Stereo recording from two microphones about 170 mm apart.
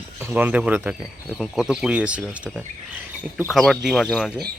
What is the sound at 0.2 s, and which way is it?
Speech, 10° right (ahead or behind).